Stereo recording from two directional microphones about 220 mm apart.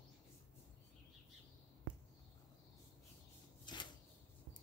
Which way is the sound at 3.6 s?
20° left (ahead or behind).